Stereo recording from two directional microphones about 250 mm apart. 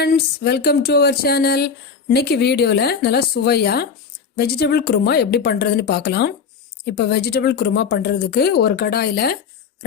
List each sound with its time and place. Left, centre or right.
0.0 s speech: left